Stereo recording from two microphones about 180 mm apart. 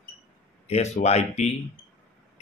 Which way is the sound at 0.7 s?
35° left (ahead or behind).